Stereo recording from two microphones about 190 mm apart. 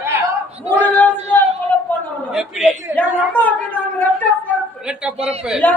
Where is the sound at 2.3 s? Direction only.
Centre (ahead or behind).